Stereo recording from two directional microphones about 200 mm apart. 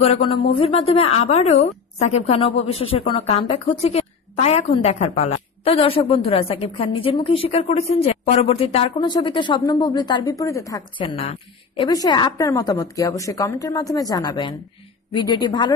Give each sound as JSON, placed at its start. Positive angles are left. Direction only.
{"t": 0.0, "sound": "a woman's voice", "side_deg": 30}
{"t": 11.1, "sound": "a woman's voice", "side_deg": 30}